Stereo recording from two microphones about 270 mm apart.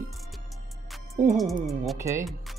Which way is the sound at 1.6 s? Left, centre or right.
Centre.